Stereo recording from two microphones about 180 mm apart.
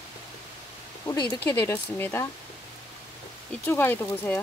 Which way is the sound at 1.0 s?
25° left (ahead or behind).